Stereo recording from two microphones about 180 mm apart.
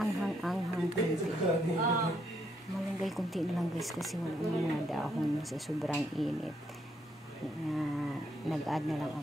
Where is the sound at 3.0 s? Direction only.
Centre (ahead or behind).